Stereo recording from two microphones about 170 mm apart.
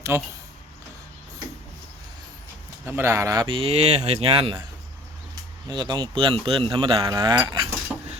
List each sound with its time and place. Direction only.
0.1 s speech: 15° right (ahead or behind)
2.8 s speech: 15° right (ahead or behind)
3.4 s speech: 30° right (ahead or behind)
5.3 s speech: 25° right (ahead or behind)
7.9 s a sound: centre (ahead or behind)